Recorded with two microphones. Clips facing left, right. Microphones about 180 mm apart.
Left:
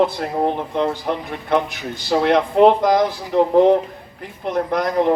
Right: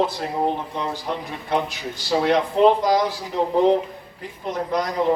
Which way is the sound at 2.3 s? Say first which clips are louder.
Left 3 dB; 60° left (ahead or behind).